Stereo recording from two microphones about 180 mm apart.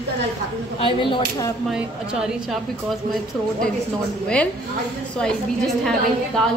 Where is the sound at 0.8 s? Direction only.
25° left (ahead or behind).